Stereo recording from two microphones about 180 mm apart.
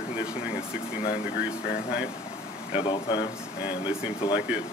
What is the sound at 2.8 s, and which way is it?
Speech, 25° left (ahead or behind).